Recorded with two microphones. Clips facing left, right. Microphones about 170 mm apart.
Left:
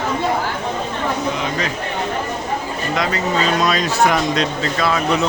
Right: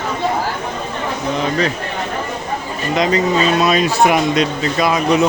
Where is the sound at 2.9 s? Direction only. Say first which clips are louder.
Right 6 dB; 20° right (ahead or behind).